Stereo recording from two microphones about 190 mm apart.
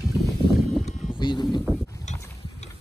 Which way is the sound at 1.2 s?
25° left (ahead or behind).